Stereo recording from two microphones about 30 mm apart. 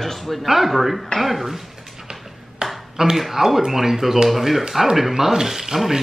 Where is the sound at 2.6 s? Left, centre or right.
Right.